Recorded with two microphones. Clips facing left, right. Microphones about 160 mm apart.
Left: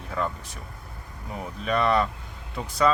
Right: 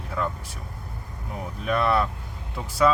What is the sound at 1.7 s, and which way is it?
Speech, 5° right (ahead or behind).